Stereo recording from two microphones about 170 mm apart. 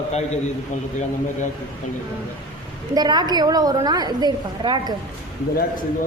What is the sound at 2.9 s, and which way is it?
A woman's voice, 25° right (ahead or behind).